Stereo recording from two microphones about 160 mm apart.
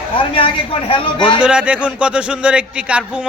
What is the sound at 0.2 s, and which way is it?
Speech, 35° left (ahead or behind).